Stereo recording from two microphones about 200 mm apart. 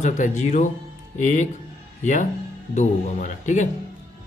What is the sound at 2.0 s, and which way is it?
Speech, 40° left (ahead or behind).